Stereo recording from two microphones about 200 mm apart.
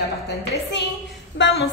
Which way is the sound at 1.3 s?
65° left (ahead or behind).